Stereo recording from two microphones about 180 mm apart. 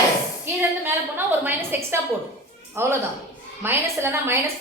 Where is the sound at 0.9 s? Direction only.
10° right (ahead or behind).